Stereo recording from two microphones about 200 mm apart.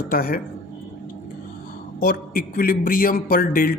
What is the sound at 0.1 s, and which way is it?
Speech, 45° left (ahead or behind).